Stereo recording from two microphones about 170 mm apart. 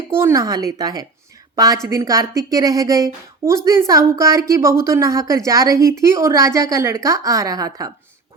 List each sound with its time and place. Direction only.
0.1 s a woman's voice: 15° right (ahead or behind)